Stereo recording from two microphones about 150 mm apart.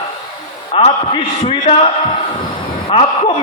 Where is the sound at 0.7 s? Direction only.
35° left (ahead or behind).